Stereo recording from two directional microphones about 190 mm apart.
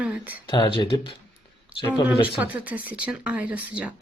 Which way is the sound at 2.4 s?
5° right (ahead or behind).